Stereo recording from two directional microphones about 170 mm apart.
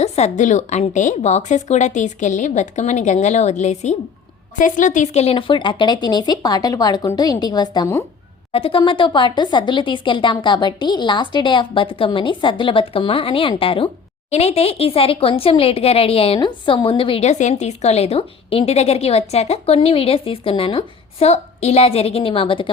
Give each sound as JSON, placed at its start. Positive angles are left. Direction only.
{"t": 0.0, "sound": "a woman's voice", "side_deg": 45}